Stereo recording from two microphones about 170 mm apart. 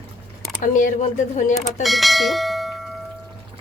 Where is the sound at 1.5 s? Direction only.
Centre (ahead or behind).